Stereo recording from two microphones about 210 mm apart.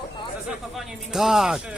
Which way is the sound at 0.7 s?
Centre (ahead or behind).